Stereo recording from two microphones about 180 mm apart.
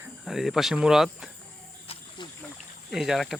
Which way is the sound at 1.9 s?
25° left (ahead or behind).